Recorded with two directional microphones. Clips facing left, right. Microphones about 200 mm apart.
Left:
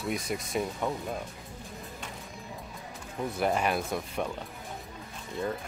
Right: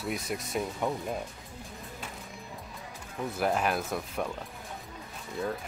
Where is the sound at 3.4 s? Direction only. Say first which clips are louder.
Even; centre (ahead or behind).